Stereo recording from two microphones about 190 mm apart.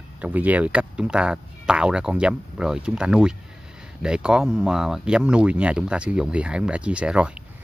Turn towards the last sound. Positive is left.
turn(degrees=-5)  # may be behind; listen again after turning